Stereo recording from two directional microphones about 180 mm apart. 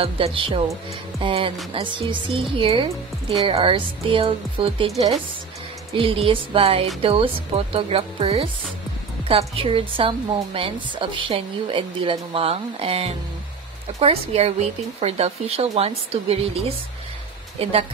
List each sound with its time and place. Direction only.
0.0 s a woman's voice: 30° right (ahead or behind)
9.6 s a woman's voice: 30° right (ahead or behind)